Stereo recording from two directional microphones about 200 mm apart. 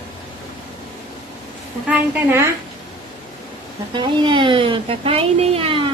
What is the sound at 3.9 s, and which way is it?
Speech, 25° right (ahead or behind).